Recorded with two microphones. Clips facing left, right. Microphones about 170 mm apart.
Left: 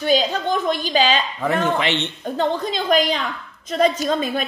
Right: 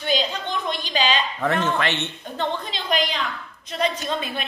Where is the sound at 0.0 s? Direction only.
45° left (ahead or behind).